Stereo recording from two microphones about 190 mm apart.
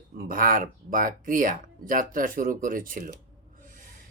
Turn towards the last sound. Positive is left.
turn(degrees=-45)  # may be behind; listen again after turning